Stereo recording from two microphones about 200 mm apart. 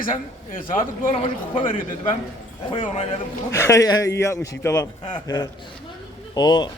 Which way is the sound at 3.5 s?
15° left (ahead or behind).